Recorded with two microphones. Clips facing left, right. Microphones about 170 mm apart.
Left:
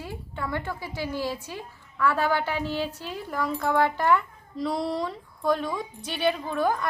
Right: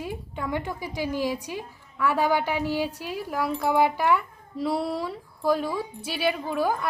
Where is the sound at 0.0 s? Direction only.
15° right (ahead or behind).